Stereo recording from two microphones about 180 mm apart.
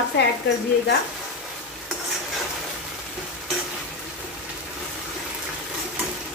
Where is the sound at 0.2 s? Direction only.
70° left (ahead or behind).